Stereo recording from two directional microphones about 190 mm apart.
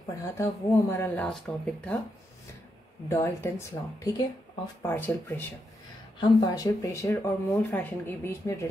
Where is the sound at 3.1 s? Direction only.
15° left (ahead or behind).